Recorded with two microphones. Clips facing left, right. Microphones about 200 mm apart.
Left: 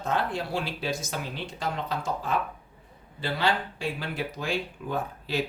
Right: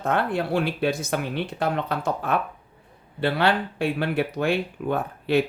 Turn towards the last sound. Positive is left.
turn(degrees=-60)  # may be behind; listen again after turning